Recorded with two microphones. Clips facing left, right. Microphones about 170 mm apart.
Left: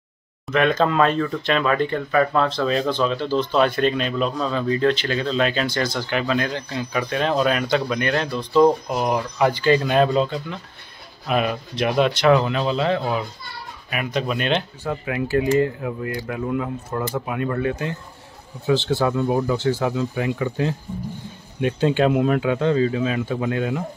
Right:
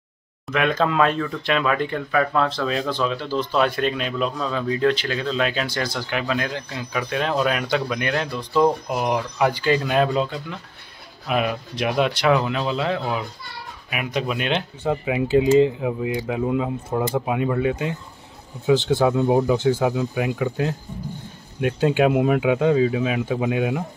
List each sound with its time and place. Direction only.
0.5 s speech: 5° right (ahead or behind)